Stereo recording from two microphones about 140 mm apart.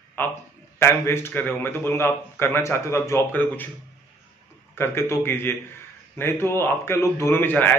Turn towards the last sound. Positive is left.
turn(degrees=15)  # may be behind; listen again after turning